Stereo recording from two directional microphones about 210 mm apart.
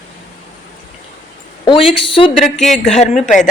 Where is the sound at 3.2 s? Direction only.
35° left (ahead or behind).